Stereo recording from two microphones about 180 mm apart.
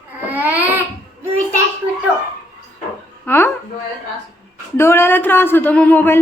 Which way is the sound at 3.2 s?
10° left (ahead or behind).